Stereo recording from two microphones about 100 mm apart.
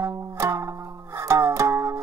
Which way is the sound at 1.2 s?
30° right (ahead or behind).